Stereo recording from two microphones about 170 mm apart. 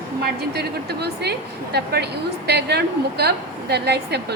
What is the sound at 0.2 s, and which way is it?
A woman's voice, 70° right (ahead or behind).